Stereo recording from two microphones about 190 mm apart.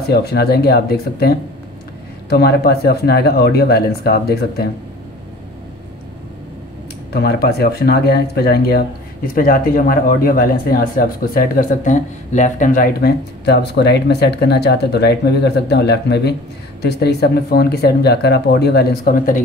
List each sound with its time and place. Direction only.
0.1 s speech: 55° left (ahead or behind)
7.1 s speech: 55° left (ahead or behind)